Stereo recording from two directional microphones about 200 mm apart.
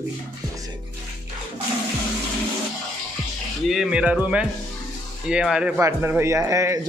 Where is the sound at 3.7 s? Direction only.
5° right (ahead or behind).